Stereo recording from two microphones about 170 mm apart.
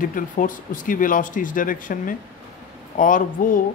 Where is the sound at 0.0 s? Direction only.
50° left (ahead or behind).